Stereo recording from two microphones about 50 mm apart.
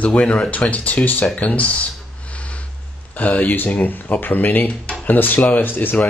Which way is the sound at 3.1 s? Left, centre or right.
Left.